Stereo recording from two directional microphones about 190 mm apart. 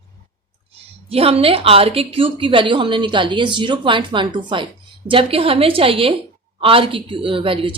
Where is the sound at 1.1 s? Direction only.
30° right (ahead or behind).